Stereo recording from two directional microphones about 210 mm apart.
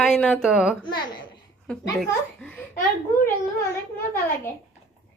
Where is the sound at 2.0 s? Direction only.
5° left (ahead or behind).